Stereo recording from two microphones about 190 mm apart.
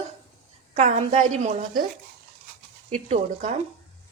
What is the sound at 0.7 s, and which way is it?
Speech, 35° right (ahead or behind).